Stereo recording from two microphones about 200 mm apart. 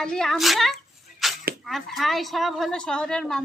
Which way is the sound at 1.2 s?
Centre (ahead or behind).